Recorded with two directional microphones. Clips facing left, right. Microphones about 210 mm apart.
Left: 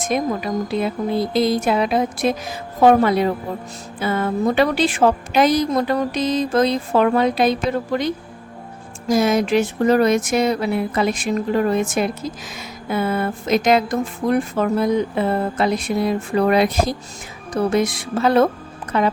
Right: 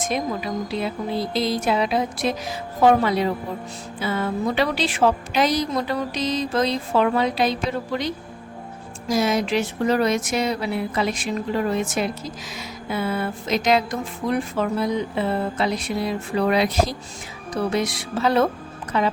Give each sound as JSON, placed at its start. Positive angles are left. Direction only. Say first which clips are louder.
{"t": 0.0, "sound": "a woman's voice", "louder": "left 4 dB", "side_deg": 50}